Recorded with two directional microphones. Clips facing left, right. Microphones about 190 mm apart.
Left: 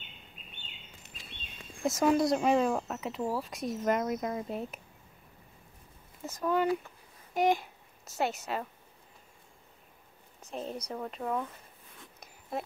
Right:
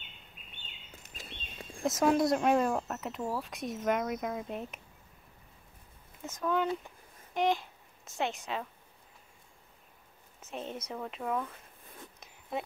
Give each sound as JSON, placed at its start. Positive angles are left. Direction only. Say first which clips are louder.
{"t": 1.9, "sound": "speech", "louder": "left 1 dB", "side_deg": 0}
{"t": 6.2, "sound": "a child's voice", "louder": "left 2 dB", "side_deg": 5}
{"t": 10.4, "sound": "speech", "louder": "left 2 dB", "side_deg": 0}
{"t": 12.2, "sound": "a sound", "louder": "even", "side_deg": 0}